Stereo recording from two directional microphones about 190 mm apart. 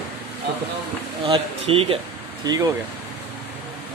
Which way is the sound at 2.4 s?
20° right (ahead or behind).